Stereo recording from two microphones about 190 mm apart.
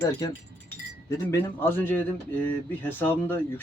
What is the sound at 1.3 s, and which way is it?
Speech, 10° left (ahead or behind).